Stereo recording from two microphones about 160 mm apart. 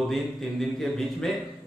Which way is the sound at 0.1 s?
Centre (ahead or behind).